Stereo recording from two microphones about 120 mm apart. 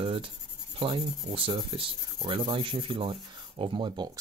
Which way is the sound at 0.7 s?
50° right (ahead or behind).